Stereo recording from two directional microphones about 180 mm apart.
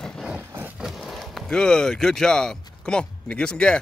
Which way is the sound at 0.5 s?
5° right (ahead or behind).